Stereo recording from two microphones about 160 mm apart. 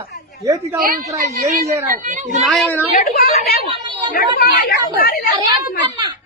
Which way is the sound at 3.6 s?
30° right (ahead or behind).